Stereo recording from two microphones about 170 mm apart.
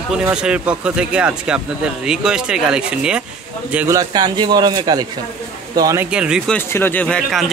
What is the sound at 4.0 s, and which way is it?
Speech, 25° right (ahead or behind).